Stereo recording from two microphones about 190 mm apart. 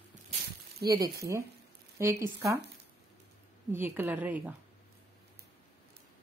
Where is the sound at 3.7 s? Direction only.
10° right (ahead or behind).